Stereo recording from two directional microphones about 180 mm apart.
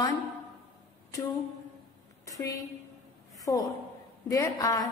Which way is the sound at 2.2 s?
20° left (ahead or behind).